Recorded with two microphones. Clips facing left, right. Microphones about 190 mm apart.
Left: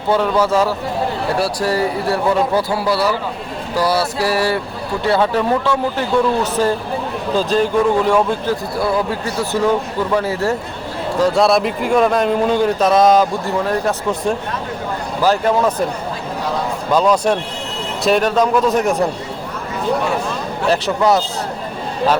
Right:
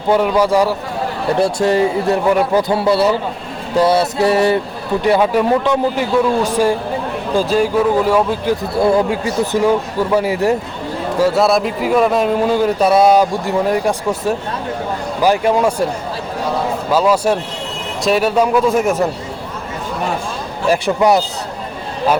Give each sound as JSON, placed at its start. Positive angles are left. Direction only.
{"t": 0.1, "sound": "a man's voice", "side_deg": -15}
{"t": 8.8, "sound": "a man's voice", "side_deg": -15}
{"t": 11.2, "sound": "a man's voice", "side_deg": -5}
{"t": 16.9, "sound": "a man's voice", "side_deg": -5}
{"t": 20.7, "sound": "a man's voice", "side_deg": -15}